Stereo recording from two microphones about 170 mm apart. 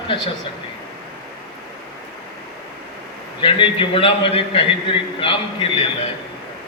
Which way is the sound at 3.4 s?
30° left (ahead or behind).